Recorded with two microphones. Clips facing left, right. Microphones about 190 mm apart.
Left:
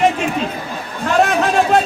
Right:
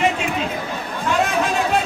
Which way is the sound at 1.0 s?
65° left (ahead or behind).